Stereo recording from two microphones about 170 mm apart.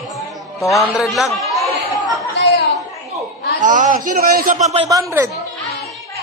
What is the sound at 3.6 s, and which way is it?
A man's voice, 50° right (ahead or behind).